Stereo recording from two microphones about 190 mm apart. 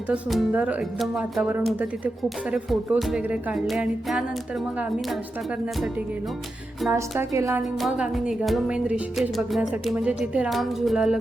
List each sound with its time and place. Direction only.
0.1 s music: 5° right (ahead or behind)
6.9 s speech: 15° right (ahead or behind)
7.6 s music: centre (ahead or behind)